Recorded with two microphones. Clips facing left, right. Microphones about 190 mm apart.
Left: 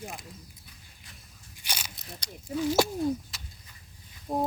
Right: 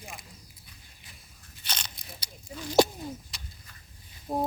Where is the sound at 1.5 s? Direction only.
10° left (ahead or behind).